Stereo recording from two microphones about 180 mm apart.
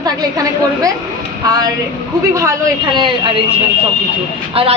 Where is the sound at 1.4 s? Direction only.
20° right (ahead or behind).